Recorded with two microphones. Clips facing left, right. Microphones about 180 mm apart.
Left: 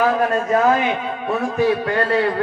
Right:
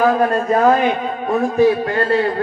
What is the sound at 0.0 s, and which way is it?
A man's voice, 40° right (ahead or behind).